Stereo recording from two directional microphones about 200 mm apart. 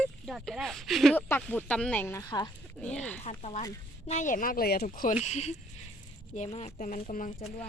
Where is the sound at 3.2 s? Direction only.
35° left (ahead or behind).